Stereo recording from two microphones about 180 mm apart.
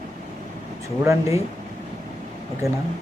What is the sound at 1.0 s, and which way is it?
Speech, 15° right (ahead or behind).